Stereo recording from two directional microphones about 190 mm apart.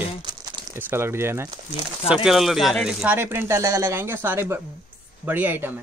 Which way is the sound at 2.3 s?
Centre (ahead or behind).